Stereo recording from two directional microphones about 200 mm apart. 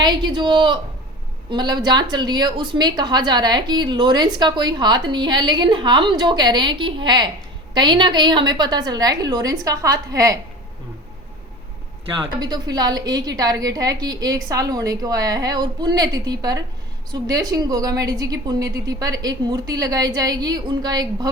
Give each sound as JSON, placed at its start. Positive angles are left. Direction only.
{"t": 0.0, "sound": "a woman's voice", "side_deg": -20}
{"t": 12.4, "sound": "a woman's voice", "side_deg": -20}